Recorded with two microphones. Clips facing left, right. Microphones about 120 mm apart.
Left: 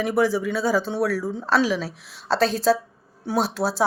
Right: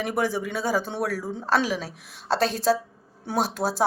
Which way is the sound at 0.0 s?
50° right (ahead or behind).